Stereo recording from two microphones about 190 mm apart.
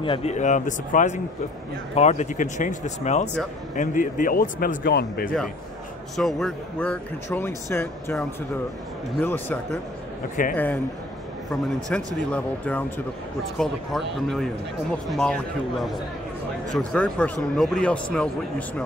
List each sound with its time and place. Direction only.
0.0 s speech: 30° left (ahead or behind); by 5.3 s 55° left (ahead or behind)
6.1 s speech: centre (ahead or behind)
9.2 s speech: 10° left (ahead or behind)
11.9 s speech: 5° left (ahead or behind)